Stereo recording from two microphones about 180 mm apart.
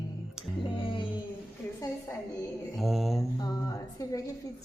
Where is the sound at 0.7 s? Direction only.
30° left (ahead or behind).